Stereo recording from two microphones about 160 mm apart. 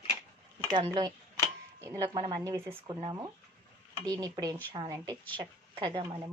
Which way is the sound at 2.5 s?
15° right (ahead or behind).